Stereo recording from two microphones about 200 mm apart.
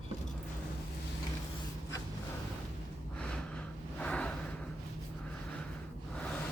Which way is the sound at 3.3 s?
5° left (ahead or behind).